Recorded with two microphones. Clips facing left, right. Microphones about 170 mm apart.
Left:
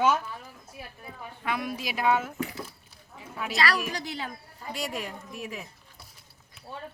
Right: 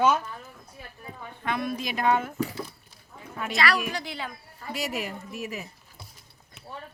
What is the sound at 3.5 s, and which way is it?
Speech, 35° left (ahead or behind).